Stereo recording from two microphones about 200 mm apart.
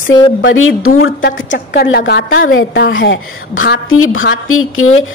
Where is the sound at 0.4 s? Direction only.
75° left (ahead or behind); by 1.1 s 90° left.